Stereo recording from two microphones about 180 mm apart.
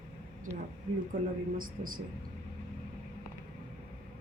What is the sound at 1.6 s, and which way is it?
Speech, 50° right (ahead or behind).